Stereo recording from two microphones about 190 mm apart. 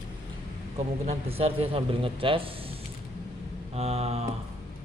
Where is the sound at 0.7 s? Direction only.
35° right (ahead or behind).